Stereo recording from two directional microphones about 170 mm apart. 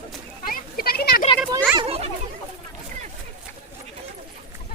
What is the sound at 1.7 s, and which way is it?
Children playing, 35° right (ahead or behind).